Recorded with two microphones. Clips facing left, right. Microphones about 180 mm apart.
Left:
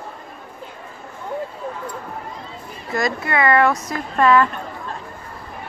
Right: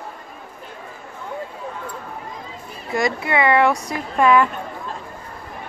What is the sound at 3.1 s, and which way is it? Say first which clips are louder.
Speech: even; 15° right (ahead or behind).